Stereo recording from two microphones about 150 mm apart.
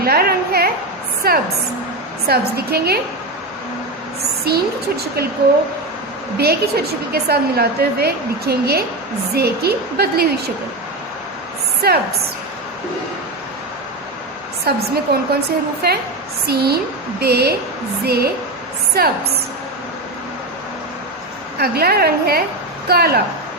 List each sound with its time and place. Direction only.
0.0 s a woman's voice: 90° right
4.4 s a woman's voice: 90° right
6.3 s a woman's voice: 90° right
11.8 s a woman's voice: 90° right
15.1 s a woman's voice: 90° right
21.6 s a woman's voice: 90° right